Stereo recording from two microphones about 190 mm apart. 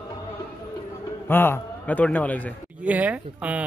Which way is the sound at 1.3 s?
10° left (ahead or behind).